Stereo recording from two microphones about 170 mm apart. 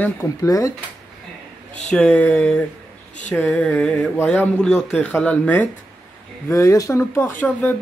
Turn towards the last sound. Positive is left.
turn(degrees=10)  # may be behind; listen again after turning